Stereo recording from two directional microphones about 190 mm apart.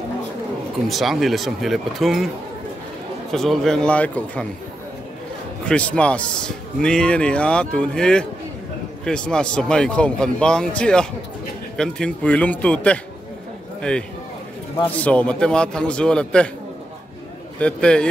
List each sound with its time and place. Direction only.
0.8 s a man's voice: centre (ahead or behind)
3.3 s a man's voice: centre (ahead or behind)
5.7 s a man's voice: 5° left (ahead or behind)
17.6 s a man's voice: 5° left (ahead or behind)